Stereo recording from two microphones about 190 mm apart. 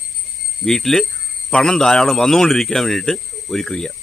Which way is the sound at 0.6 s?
Centre (ahead or behind).